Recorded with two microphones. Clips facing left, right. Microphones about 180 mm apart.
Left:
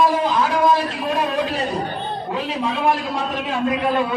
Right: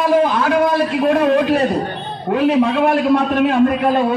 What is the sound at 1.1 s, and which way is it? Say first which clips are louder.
A man's voice: right 7 dB; 60° right (ahead or behind).